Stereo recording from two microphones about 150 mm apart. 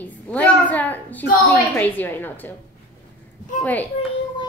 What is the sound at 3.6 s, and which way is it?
Speech, 10° left (ahead or behind).